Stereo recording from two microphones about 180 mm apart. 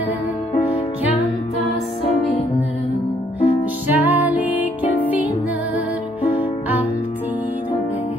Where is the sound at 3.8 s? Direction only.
10° right (ahead or behind).